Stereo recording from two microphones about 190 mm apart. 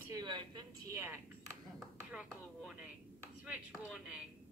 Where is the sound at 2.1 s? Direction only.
5° right (ahead or behind).